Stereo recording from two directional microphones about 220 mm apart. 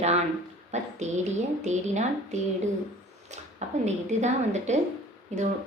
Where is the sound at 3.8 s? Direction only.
30° right (ahead or behind).